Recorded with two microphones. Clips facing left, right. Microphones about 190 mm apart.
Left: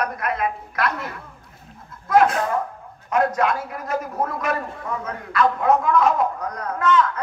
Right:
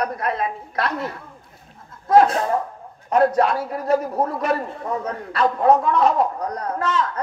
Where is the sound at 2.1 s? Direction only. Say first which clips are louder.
Right 2 dB; 35° right (ahead or behind).